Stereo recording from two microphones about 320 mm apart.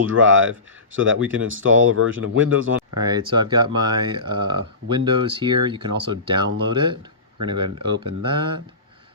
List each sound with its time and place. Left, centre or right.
0.1 s speech: right
3.0 s speech: centre